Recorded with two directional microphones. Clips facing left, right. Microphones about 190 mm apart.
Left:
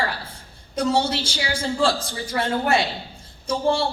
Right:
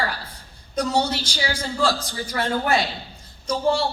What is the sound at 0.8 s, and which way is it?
A woman's voice, 30° left (ahead or behind).